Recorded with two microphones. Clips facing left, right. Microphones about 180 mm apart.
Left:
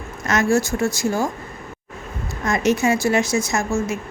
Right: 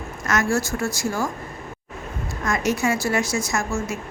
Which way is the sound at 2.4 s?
20° left (ahead or behind).